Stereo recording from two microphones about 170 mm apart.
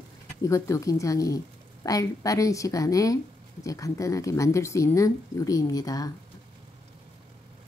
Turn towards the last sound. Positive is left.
turn(degrees=20)  # may be behind; listen again after turning